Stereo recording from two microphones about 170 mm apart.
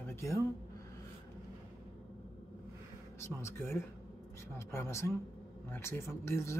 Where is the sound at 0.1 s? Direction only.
15° left (ahead or behind).